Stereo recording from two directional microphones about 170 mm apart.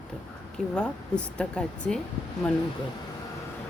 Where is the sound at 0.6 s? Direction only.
5° left (ahead or behind).